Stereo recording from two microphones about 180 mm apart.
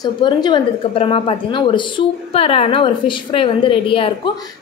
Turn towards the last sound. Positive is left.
turn(degrees=30)  # may be behind; listen again after turning